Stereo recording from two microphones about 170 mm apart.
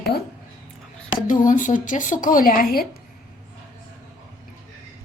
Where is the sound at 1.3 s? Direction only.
50° left (ahead or behind).